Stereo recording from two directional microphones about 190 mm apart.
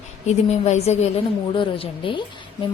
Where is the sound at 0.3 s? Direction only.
35° left (ahead or behind).